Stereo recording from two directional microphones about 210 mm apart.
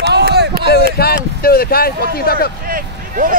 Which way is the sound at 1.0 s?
45° left (ahead or behind).